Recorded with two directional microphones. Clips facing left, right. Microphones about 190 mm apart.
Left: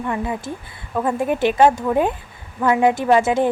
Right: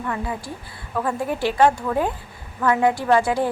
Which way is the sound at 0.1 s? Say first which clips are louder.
Left 3 dB; 20° left (ahead or behind).